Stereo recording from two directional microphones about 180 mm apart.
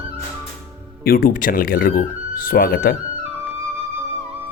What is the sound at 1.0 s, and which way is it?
A man's voice, 55° left (ahead or behind).